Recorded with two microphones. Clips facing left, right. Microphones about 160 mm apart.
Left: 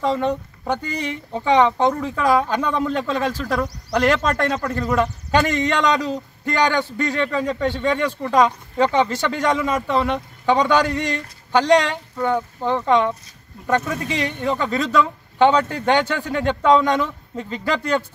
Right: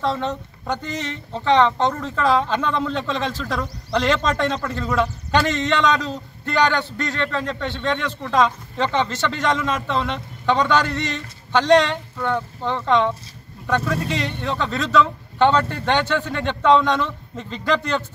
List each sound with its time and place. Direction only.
0.0 s speech: 10° left (ahead or behind)